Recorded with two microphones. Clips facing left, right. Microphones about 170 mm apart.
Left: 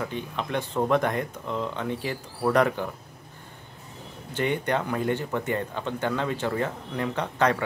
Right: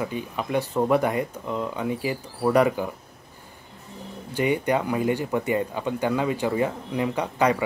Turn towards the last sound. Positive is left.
turn(degrees=-10)  # may be behind; listen again after turning